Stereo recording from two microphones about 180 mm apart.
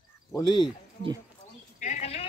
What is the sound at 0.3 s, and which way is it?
Speech, 25° left (ahead or behind).